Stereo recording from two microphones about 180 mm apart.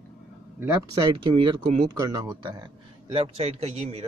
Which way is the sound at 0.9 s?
25° right (ahead or behind).